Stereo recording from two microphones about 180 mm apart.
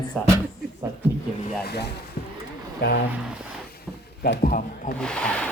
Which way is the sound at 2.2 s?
55° left (ahead or behind).